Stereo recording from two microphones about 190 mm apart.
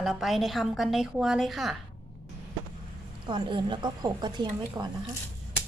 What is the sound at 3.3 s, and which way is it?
A woman's voice, 25° right (ahead or behind).